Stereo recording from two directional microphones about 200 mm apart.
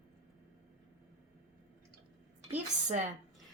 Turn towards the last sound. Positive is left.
turn(degrees=-35)  # may be behind; listen again after turning